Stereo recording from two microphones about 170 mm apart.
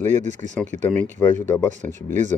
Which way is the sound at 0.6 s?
45° right (ahead or behind).